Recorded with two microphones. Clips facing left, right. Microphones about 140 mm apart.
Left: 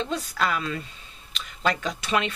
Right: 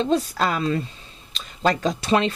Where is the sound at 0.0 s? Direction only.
30° right (ahead or behind).